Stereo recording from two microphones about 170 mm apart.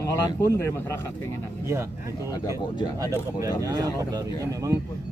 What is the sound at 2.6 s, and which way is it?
Speech, 25° left (ahead or behind).